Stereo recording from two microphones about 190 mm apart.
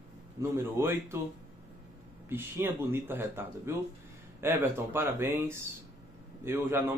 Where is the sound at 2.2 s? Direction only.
10° right (ahead or behind).